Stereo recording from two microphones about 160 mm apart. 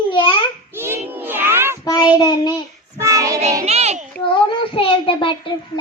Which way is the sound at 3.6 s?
40° right (ahead or behind).